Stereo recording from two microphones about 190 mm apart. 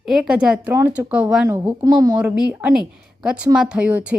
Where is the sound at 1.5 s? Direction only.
15° right (ahead or behind).